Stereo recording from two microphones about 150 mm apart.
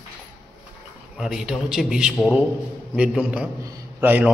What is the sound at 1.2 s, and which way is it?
A man's voice, 5° right (ahead or behind).